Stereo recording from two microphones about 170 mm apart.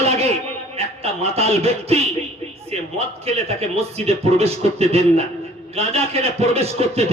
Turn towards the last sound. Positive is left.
turn(degrees=-35)  # may be behind; listen again after turning